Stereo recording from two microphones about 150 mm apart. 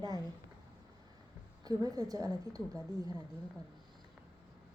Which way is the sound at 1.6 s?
25° right (ahead or behind).